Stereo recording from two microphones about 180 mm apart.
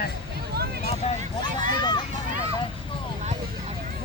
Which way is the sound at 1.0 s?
35° left (ahead or behind).